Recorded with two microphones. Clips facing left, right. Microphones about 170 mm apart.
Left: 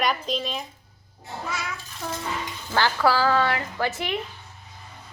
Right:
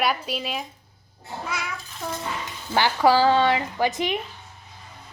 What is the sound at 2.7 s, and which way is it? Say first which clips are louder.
A woman's voice: right 3 dB; 15° right (ahead or behind).